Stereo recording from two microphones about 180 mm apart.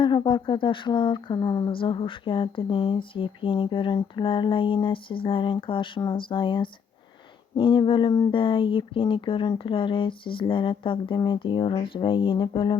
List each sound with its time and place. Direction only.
0.0 s speech: 25° left (ahead or behind)